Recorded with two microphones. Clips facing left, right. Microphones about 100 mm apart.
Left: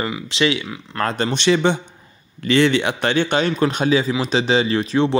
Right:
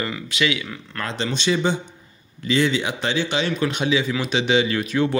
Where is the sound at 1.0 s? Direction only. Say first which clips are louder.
Left 5 dB; 50° left (ahead or behind).